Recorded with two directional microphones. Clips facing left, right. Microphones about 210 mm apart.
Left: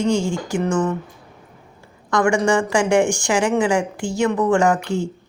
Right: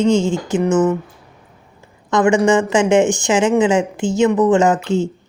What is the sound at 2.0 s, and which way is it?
Speech, 20° right (ahead or behind).